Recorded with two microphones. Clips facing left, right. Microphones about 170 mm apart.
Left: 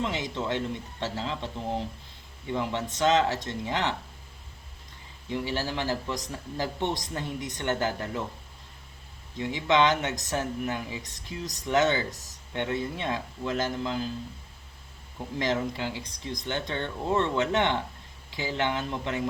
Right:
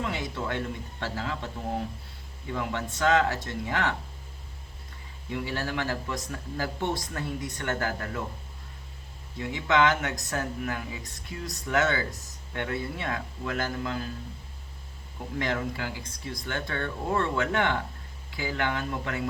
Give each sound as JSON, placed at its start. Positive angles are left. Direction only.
{"t": 0.0, "sound": "speech", "side_deg": 20}
{"t": 5.3, "sound": "speech", "side_deg": 25}
{"t": 9.4, "sound": "speech", "side_deg": 25}
{"t": 15.4, "sound": "speech", "side_deg": 20}